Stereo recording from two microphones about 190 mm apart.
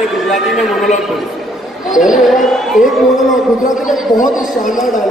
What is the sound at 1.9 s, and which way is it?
Speech, 45° left (ahead or behind).